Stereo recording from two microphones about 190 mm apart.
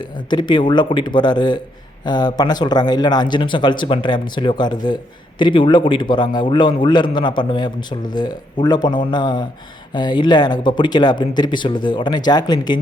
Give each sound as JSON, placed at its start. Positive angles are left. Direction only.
{"t": 0.0, "sound": "speech", "side_deg": 25}